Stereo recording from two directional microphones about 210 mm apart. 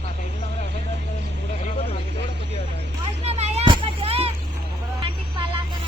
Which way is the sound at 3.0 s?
30° right (ahead or behind).